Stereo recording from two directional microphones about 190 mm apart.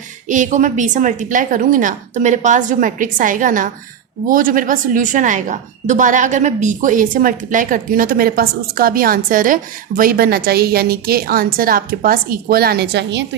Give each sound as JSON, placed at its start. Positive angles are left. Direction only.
{"t": 0.3, "sound": "a woman's voice", "side_deg": -40}